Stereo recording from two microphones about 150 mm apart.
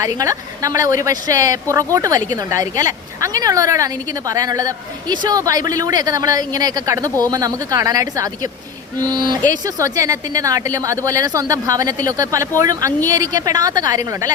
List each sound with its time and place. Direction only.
0.0 s a woman's voice: 20° right (ahead or behind)